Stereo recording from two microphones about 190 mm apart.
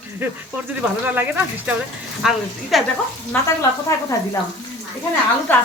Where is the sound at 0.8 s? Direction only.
10° right (ahead or behind).